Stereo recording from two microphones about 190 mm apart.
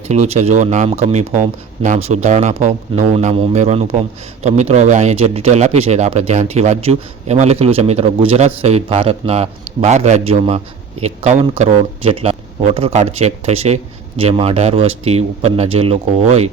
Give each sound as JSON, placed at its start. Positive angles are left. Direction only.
{"t": 0.1, "sound": "speech", "side_deg": -35}